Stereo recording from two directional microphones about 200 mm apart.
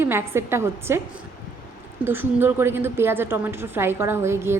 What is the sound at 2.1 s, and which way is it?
A woman's voice, 10° right (ahead or behind).